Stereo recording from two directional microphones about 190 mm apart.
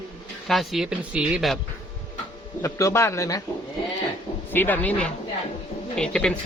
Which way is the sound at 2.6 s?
15° left (ahead or behind).